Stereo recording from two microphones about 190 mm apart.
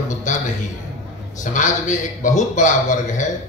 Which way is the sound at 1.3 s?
40° left (ahead or behind).